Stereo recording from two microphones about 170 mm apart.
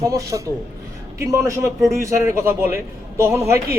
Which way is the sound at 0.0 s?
20° right (ahead or behind).